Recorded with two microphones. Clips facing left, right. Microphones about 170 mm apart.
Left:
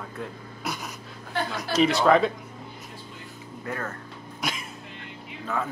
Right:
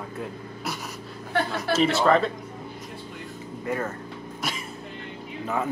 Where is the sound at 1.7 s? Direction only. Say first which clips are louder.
Left 1 dB; centre (ahead or behind).